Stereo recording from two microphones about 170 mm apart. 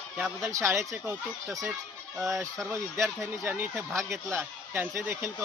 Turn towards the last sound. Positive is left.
turn(degrees=-15)  # may be behind; listen again after turning